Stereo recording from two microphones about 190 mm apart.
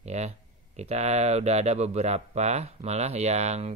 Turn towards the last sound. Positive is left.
turn(degrees=-35)  # may be behind; listen again after turning